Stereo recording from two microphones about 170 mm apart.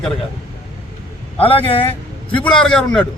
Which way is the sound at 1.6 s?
35° left (ahead or behind).